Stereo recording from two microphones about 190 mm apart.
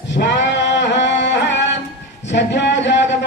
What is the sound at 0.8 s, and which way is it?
Music, 70° left (ahead or behind).